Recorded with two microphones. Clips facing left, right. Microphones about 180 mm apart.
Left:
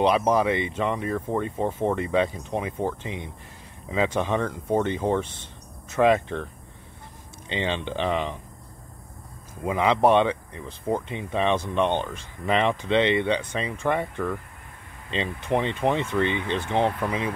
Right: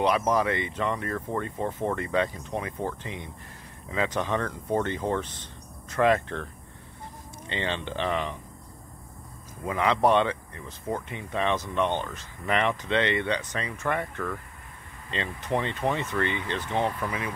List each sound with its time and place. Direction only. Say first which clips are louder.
0.0 s speech: left 3 dB; 25° left (ahead or behind)
7.4 s speech: left 3 dB; 15° left (ahead or behind)
9.6 s speech: left 3 dB; 20° left (ahead or behind)